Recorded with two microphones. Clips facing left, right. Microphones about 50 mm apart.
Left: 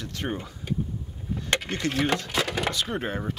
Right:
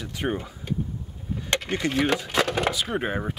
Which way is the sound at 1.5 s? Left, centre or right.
Centre.